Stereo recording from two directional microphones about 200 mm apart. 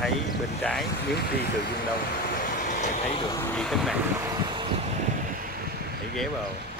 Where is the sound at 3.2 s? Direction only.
20° left (ahead or behind).